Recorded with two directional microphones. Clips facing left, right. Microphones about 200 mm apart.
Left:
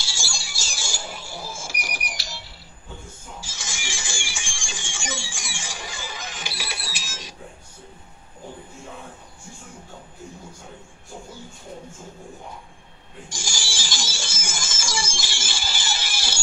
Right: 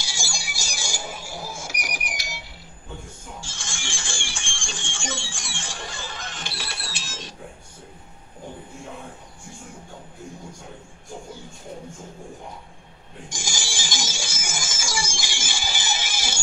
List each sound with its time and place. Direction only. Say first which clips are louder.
0.0 s a sound: right 2 dB; 15° right (ahead or behind)
3.3 s music: even; 5° left (ahead or behind)
13.3 s music: right 1 dB; 20° right (ahead or behind)